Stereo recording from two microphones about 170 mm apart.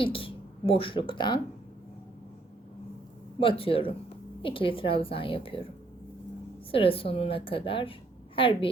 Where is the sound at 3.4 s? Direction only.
30° left (ahead or behind).